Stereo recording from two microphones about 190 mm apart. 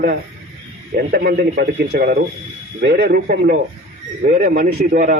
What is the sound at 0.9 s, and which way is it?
Speech, 50° right (ahead or behind).